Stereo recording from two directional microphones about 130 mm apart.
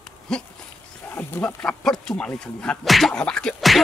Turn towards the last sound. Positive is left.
turn(degrees=5)  # may be behind; listen again after turning